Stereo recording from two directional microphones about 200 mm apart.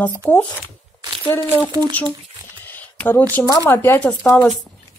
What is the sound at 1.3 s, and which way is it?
Speech, 10° left (ahead or behind).